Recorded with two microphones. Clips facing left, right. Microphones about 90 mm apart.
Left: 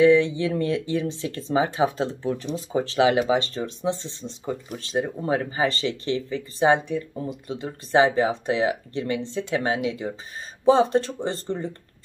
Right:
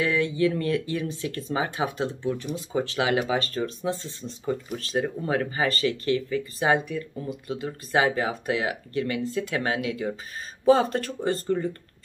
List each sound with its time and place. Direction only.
0.0 s speech: 25° left (ahead or behind)